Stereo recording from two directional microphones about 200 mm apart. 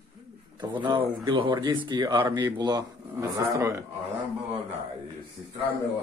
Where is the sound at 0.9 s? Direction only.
25° right (ahead or behind).